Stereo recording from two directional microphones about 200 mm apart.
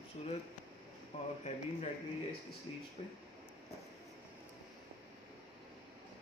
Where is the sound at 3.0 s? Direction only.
30° left (ahead or behind).